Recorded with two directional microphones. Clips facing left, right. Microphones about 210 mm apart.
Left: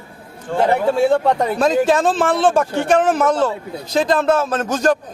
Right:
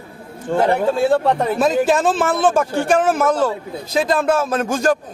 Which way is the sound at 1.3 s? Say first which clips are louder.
Even; 5° right (ahead or behind).